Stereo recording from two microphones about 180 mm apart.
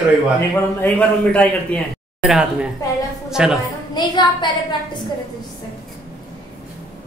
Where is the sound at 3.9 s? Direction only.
25° left (ahead or behind).